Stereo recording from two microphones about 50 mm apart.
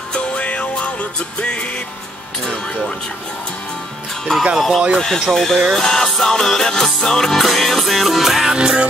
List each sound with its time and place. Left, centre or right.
0.1 s music: left
4.6 s music: centre
4.9 s speech: centre
5.6 s music: centre